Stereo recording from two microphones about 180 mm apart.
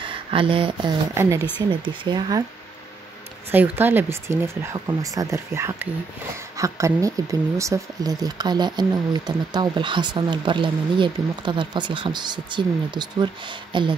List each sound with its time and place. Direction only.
0.0 s speech: 30° right (ahead or behind)
1.1 s speech: 15° right (ahead or behind)
1.7 s speech: 25° right (ahead or behind)
3.5 s speech: 10° right (ahead or behind); by 13.9 s 25° right (ahead or behind)